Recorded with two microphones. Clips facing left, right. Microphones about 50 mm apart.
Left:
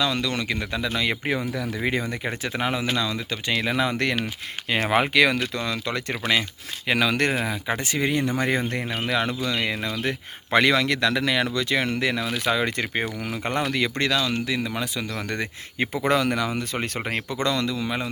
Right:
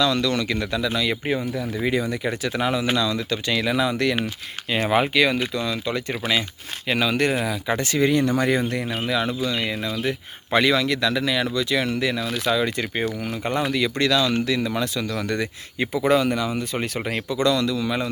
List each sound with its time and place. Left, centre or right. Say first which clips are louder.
0.0 s speech: right 4 dB; left
1.2 s speech: right 2 dB; left
1.7 s speech: right 4 dB; left
3.8 s speech: right 2 dB; left
4.7 s speech: right 1 dB; left
5.5 s speech: right 2 dB; left
7.3 s speech: right 2 dB; left
7.7 s speech: right 5 dB; centre
9.0 s speech: right 1 dB; left
14.0 s speech: right 3 dB; left
15.4 s speech: right 1 dB; left
16.0 s speech: right 2 dB; left